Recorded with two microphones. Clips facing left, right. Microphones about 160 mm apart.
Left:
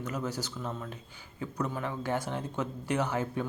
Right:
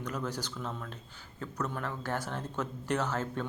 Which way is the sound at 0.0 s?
10° left (ahead or behind).